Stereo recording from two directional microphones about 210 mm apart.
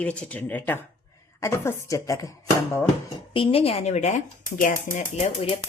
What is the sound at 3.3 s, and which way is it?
Speech, 25° left (ahead or behind).